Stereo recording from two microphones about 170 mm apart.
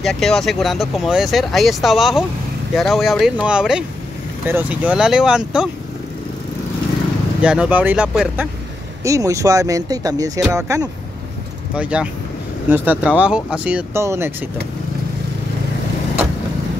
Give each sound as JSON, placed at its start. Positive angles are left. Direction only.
{"t": 0.0, "sound": "speech", "side_deg": 0}
{"t": 7.4, "sound": "speech", "side_deg": -5}
{"t": 9.0, "sound": "speech", "side_deg": -20}
{"t": 11.7, "sound": "speech", "side_deg": -5}